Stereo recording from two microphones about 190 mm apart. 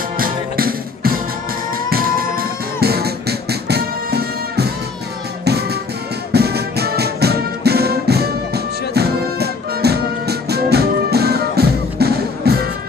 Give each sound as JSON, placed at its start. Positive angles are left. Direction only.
{"t": 0.2, "sound": "music", "side_deg": -50}